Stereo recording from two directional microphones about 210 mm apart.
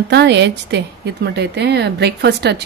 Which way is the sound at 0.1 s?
55° right (ahead or behind).